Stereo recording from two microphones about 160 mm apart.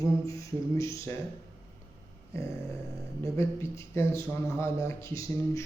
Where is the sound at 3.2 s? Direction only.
20° left (ahead or behind).